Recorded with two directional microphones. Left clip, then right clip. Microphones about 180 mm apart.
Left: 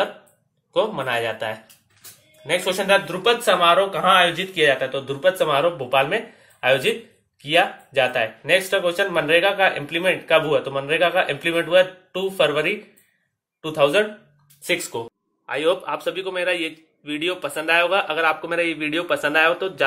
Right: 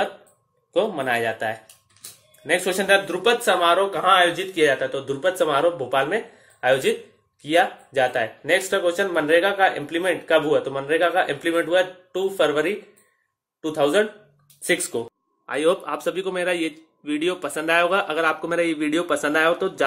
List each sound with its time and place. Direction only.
0.7 s a man's voice: 55° right (ahead or behind)
15.4 s a man's voice: 45° right (ahead or behind)